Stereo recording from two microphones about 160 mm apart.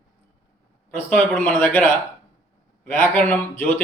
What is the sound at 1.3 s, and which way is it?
A man's voice, 10° left (ahead or behind).